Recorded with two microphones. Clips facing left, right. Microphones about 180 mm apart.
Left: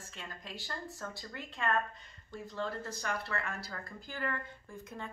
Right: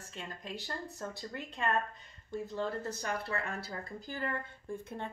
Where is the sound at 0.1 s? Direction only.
20° right (ahead or behind).